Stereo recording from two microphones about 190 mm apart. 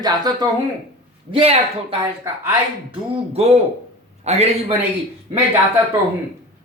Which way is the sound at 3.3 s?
30° right (ahead or behind).